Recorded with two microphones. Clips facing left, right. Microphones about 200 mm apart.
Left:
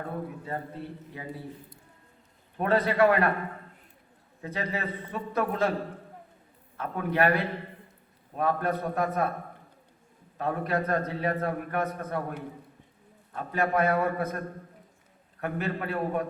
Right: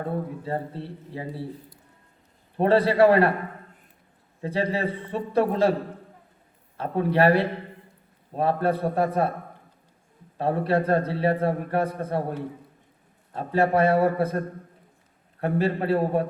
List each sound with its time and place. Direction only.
0.4 s a man's voice: 30° right (ahead or behind)
2.6 s a man's voice: 30° right (ahead or behind)
4.4 s a man's voice: 30° right (ahead or behind)
6.7 s a man's voice: 30° right (ahead or behind)
10.3 s a man's voice: 30° right (ahead or behind)
13.3 s a man's voice: 30° right (ahead or behind)